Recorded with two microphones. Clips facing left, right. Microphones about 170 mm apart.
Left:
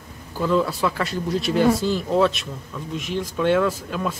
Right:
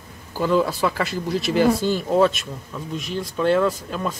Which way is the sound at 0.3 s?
Centre (ahead or behind).